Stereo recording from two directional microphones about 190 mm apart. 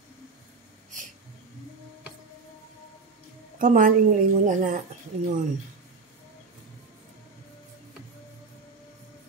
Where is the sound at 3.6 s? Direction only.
45° right (ahead or behind).